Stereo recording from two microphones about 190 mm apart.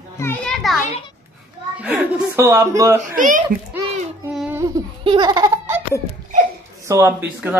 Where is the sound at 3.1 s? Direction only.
45° right (ahead or behind).